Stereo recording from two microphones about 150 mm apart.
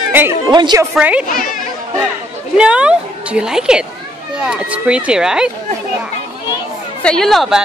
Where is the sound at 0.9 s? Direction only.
10° right (ahead or behind).